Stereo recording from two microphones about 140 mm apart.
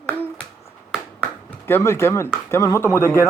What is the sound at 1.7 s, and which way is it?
Speech, 20° left (ahead or behind).